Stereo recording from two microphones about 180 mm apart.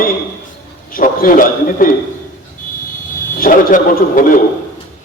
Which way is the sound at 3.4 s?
50° left (ahead or behind).